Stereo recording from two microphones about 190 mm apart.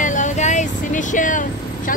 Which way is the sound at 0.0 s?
40° left (ahead or behind).